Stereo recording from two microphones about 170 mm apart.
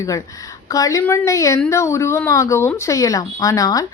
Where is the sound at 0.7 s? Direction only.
20° left (ahead or behind).